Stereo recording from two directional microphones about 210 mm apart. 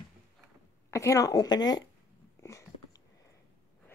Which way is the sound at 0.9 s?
15° left (ahead or behind).